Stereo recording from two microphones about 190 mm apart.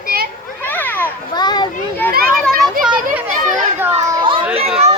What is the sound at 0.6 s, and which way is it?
Children playing, 10° left (ahead or behind).